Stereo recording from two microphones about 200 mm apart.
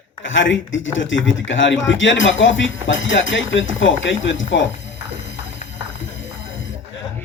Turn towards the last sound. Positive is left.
turn(degrees=70)  # may be behind; listen again after turning